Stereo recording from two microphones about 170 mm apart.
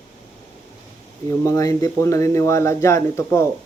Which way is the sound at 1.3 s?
20° left (ahead or behind).